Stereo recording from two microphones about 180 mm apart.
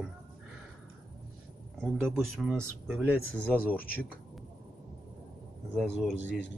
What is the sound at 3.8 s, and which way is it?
Speech, 55° left (ahead or behind).